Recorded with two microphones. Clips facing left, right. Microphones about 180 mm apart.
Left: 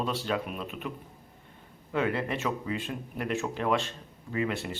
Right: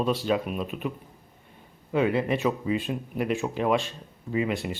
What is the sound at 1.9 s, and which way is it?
Speech, 15° right (ahead or behind).